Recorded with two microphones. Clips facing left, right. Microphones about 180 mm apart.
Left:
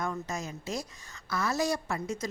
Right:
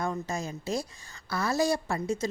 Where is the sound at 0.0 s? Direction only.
30° right (ahead or behind).